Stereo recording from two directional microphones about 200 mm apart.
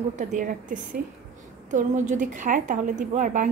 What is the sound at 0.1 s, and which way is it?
A woman's voice, 40° right (ahead or behind).